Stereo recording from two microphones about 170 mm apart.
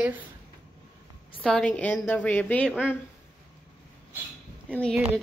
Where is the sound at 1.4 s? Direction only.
5° left (ahead or behind).